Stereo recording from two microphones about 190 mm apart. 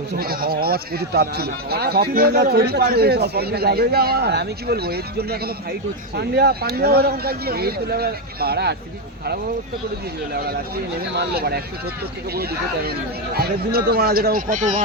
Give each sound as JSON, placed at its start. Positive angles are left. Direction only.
{"t": 0.2, "sound": "speech", "side_deg": -50}
{"t": 10.3, "sound": "speech", "side_deg": -55}
{"t": 13.3, "sound": "speech", "side_deg": -55}